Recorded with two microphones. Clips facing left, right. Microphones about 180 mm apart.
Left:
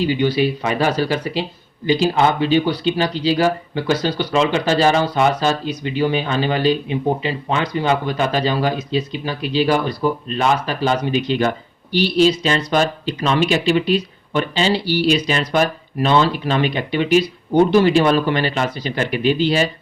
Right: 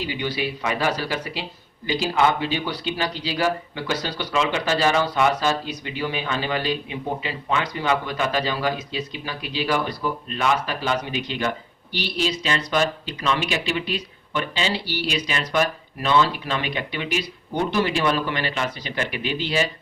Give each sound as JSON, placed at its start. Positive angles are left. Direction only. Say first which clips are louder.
{"t": 0.0, "sound": "speech", "louder": "left 9 dB", "side_deg": 30}